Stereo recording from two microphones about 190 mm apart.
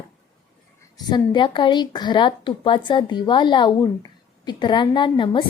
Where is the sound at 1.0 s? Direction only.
25° left (ahead or behind).